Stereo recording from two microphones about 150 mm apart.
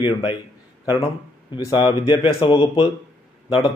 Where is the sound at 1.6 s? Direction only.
30° left (ahead or behind).